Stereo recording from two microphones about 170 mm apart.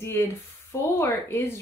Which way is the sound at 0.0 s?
15° left (ahead or behind).